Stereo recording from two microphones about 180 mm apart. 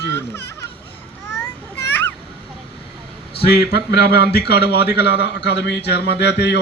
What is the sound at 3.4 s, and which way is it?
A man's voice, 60° left (ahead or behind).